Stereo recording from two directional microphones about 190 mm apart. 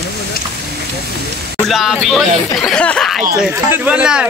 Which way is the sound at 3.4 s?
10° right (ahead or behind).